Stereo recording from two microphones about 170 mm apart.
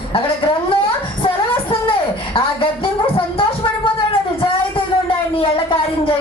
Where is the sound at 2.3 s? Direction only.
35° left (ahead or behind).